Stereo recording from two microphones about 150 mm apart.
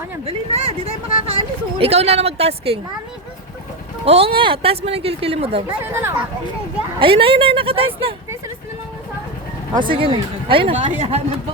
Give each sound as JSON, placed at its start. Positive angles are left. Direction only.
{"t": 0.3, "sound": "speech", "side_deg": -45}
{"t": 4.0, "sound": "speech", "side_deg": -40}
{"t": 5.8, "sound": "speech", "side_deg": -15}
{"t": 7.0, "sound": "speech", "side_deg": -35}
{"t": 9.7, "sound": "speech", "side_deg": -35}